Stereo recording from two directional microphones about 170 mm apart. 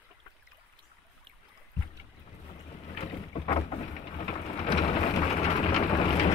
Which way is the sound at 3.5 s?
25° left (ahead or behind).